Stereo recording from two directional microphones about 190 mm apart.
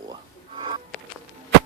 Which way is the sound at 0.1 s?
25° right (ahead or behind).